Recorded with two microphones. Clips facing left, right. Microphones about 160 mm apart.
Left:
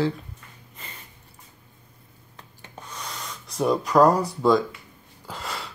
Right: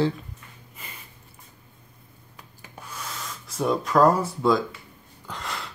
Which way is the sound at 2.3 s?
5° right (ahead or behind).